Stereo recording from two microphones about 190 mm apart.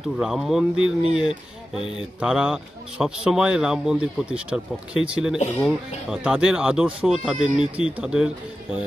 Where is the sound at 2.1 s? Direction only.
5° right (ahead or behind).